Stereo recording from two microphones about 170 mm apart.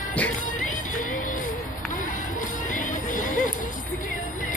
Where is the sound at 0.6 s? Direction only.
50° left (ahead or behind).